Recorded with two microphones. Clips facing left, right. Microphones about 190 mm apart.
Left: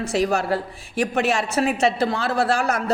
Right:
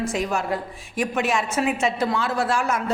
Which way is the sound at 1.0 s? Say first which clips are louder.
Left 2 dB; 35° left (ahead or behind).